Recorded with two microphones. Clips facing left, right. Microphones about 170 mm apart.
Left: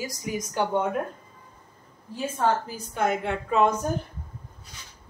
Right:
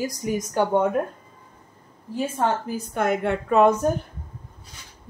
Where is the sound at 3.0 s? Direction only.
55° right (ahead or behind).